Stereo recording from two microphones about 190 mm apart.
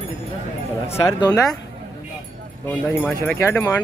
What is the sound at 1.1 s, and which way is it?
Speech, 20° left (ahead or behind).